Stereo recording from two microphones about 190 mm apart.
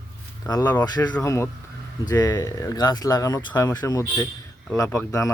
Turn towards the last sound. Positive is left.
turn(degrees=15)  # may be behind; listen again after turning